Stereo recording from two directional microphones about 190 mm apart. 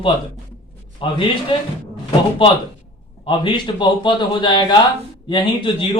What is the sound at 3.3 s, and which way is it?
A man's voice, 25° left (ahead or behind).